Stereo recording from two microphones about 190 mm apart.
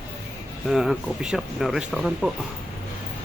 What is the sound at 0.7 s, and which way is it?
Speech, centre (ahead or behind).